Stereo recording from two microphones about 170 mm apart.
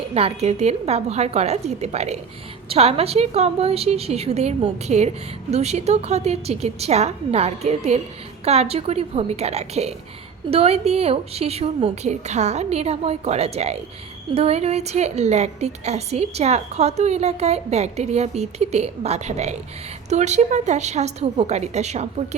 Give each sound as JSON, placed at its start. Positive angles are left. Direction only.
{"t": 0.1, "sound": "a woman's voice", "side_deg": -35}